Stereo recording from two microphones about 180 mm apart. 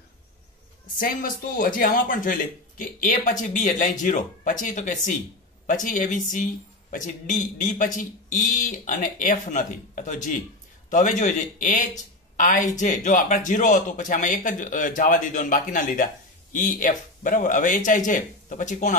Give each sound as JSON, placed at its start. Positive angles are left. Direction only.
{"t": 0.9, "sound": "a man's voice", "side_deg": 50}